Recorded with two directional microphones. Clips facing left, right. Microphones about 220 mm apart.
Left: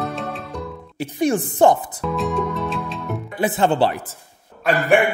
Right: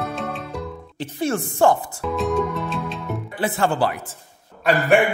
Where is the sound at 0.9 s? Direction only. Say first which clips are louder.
Left 4 dB; 15° left (ahead or behind).